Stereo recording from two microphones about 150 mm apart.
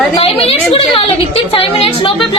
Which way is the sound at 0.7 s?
40° left (ahead or behind).